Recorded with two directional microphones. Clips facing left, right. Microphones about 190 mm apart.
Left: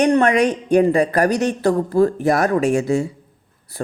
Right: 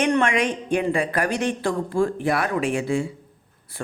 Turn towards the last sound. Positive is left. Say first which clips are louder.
# left 6 dB
turn(degrees=40)  # may be behind; listen again after turning